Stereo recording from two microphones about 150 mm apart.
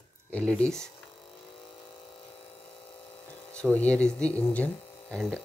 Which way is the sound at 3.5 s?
10° left (ahead or behind).